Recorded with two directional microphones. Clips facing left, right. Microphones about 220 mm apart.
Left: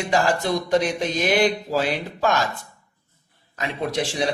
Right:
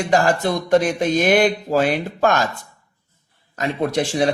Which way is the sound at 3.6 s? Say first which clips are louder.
Right 5 dB; 50° right (ahead or behind).